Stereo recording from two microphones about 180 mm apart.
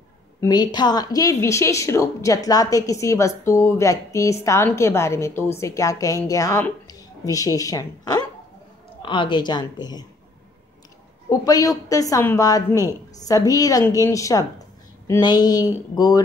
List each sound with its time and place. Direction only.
0.4 s a woman's voice: 25° left (ahead or behind)
11.2 s a woman's voice: 20° left (ahead or behind)